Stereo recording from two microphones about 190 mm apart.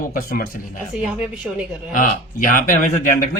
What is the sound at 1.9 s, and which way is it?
Speech, 45° left (ahead or behind).